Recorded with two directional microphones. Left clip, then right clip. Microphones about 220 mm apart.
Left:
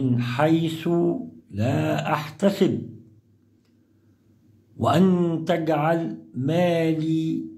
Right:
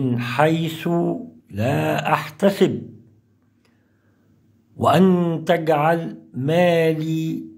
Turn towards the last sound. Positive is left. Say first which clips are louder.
# even
turn(degrees=-20)  # may be behind; listen again after turning